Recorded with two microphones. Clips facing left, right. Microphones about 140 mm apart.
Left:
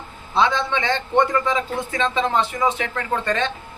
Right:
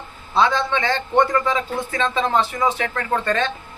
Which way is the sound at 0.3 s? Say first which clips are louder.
Right 1 dB; 20° left (ahead or behind).